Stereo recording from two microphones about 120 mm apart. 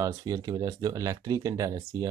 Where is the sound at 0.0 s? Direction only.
30° right (ahead or behind).